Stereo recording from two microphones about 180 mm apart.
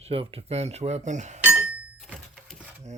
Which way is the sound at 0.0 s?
30° right (ahead or behind).